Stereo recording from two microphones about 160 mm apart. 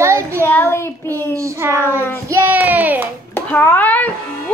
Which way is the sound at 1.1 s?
20° right (ahead or behind).